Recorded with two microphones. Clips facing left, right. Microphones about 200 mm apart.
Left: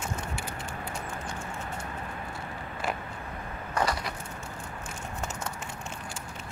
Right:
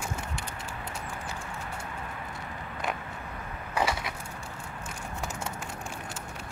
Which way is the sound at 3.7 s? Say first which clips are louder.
Even; 5° right (ahead or behind).